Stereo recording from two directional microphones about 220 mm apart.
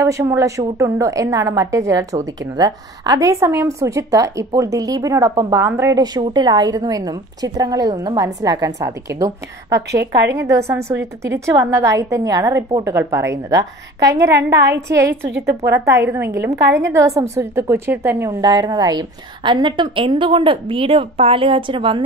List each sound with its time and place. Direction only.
0.0 s a woman's voice: 15° right (ahead or behind)
9.8 s a woman's voice: 50° right (ahead or behind)
10.3 s a woman's voice: 15° right (ahead or behind)
14.3 s a woman's voice: 50° right (ahead or behind)
15.8 s a woman's voice: 10° right (ahead or behind)
16.6 s a woman's voice: 55° right (ahead or behind)
17.2 s a woman's voice: 15° right (ahead or behind)